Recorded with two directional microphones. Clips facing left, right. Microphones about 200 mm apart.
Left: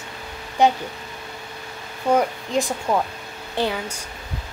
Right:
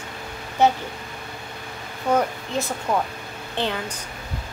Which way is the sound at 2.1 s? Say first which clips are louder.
Left 2 dB; 15° left (ahead or behind).